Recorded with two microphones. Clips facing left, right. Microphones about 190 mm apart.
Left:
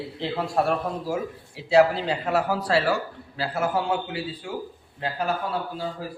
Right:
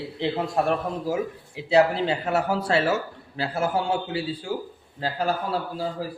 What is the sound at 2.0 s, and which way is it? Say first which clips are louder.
A man's voice: even; 25° right (ahead or behind).